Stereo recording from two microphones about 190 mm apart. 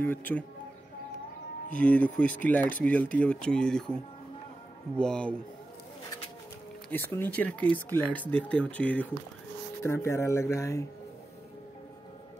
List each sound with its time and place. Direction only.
0.0 s speech: 10° left (ahead or behind)
1.7 s speech: 5° left (ahead or behind)
6.9 s speech: 10° left (ahead or behind)